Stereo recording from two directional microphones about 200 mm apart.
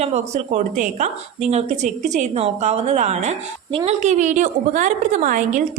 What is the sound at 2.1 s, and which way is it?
A woman's voice, 35° right (ahead or behind).